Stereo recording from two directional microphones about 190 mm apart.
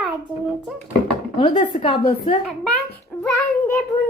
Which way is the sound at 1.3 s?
25° left (ahead or behind).